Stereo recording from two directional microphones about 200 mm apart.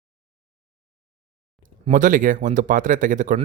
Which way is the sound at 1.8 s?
40° right (ahead or behind).